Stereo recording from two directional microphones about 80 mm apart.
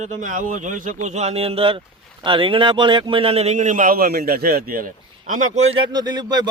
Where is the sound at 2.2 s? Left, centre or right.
Right.